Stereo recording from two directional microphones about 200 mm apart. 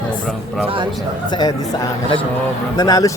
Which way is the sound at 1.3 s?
20° left (ahead or behind).